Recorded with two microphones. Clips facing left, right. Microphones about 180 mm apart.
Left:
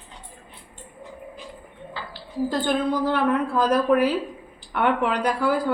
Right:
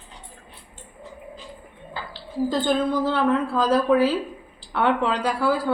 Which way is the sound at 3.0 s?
15° left (ahead or behind).